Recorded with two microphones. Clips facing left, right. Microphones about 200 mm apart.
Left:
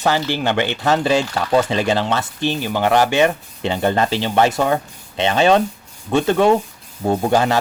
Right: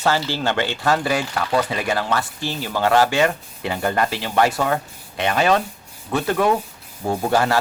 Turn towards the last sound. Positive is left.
turn(degrees=20)  # may be behind; listen again after turning